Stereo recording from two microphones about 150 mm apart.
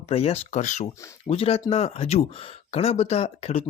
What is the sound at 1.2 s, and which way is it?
Speech, 40° left (ahead or behind).